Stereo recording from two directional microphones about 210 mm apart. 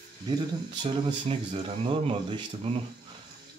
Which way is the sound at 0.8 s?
25° right (ahead or behind).